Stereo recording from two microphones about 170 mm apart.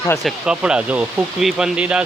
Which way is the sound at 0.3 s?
5° right (ahead or behind).